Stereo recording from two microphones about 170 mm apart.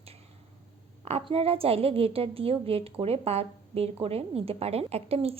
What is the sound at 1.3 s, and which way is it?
A woman's voice, 35° right (ahead or behind).